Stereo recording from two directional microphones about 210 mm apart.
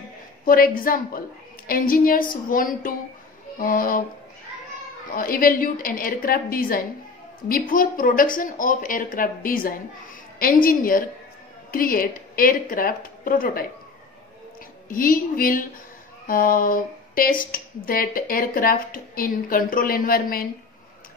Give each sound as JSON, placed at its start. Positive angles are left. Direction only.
{"t": 0.5, "sound": "speech", "side_deg": 45}
{"t": 5.1, "sound": "speech", "side_deg": 45}
{"t": 14.9, "sound": "speech", "side_deg": 45}